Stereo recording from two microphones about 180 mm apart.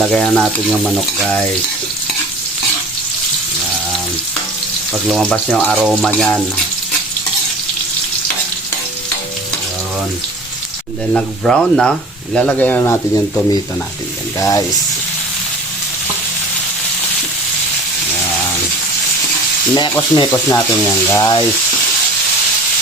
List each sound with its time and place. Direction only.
0.1 s speech: 5° left (ahead or behind)
5.0 s speech: centre (ahead or behind)
11.1 s speech: centre (ahead or behind); by 14.6 s 20° left (ahead or behind)
19.7 s speech: 25° left (ahead or behind)